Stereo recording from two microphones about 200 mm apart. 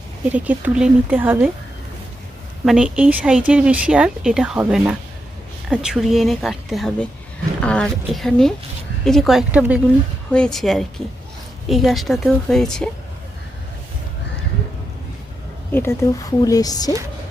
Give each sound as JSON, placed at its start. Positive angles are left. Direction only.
{"t": 0.3, "sound": "speech", "side_deg": -5}
{"t": 2.6, "sound": "speech", "side_deg": -5}
{"t": 15.7, "sound": "speech", "side_deg": 10}